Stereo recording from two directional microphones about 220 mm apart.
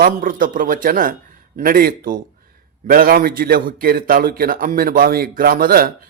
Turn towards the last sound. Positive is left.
turn(degrees=-40)  # may be behind; listen again after turning